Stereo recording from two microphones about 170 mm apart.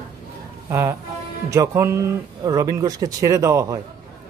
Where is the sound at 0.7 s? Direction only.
15° right (ahead or behind).